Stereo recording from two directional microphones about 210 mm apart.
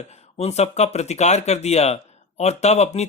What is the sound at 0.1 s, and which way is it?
Speech, 30° left (ahead or behind).